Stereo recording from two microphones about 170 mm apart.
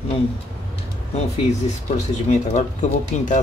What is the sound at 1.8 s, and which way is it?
Speech, 45° left (ahead or behind).